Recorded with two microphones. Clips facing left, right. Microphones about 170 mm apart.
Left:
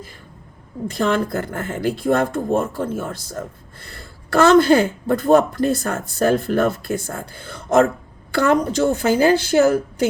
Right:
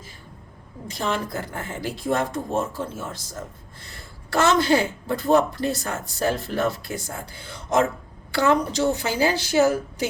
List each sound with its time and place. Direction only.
0.9 s speech: 55° left (ahead or behind)